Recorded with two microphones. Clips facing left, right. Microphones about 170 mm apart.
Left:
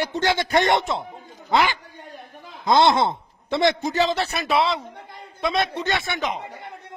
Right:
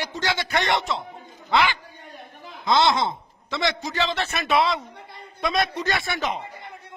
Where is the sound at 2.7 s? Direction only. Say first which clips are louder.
Left 3 dB; 55° left (ahead or behind).